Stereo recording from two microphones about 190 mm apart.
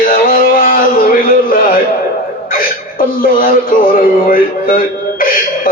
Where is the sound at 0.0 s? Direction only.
50° left (ahead or behind).